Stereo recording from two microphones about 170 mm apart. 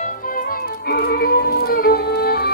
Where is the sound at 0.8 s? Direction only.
65° left (ahead or behind).